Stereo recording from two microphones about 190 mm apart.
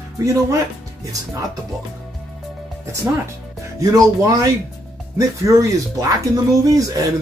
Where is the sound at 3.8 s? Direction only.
20° right (ahead or behind).